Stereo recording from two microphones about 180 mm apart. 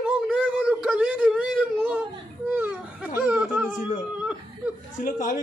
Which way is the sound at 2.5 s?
10° right (ahead or behind).